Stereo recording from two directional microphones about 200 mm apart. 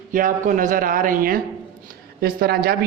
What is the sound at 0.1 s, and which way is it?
Speech, 40° right (ahead or behind).